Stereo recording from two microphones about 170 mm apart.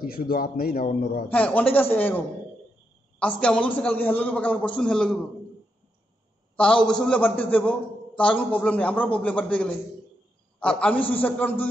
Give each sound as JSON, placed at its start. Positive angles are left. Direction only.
{"t": 0.0, "sound": "speech", "side_deg": 60}
{"t": 1.3, "sound": "a man's voice", "side_deg": 10}
{"t": 6.5, "sound": "a man's voice", "side_deg": 5}